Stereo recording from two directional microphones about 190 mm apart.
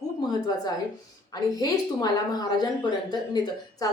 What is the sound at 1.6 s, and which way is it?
Speech, 20° left (ahead or behind).